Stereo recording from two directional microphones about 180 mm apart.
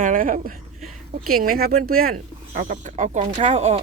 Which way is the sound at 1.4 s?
55° right (ahead or behind).